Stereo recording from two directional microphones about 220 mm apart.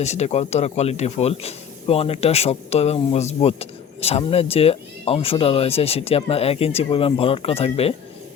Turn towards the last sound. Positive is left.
turn(degrees=25)  # may be behind; listen again after turning